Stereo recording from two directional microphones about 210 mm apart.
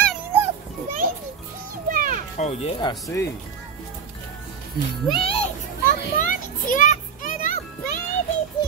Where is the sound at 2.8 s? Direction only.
15° left (ahead or behind).